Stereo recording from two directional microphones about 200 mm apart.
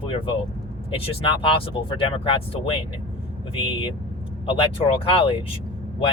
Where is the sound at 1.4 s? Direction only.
25° left (ahead or behind).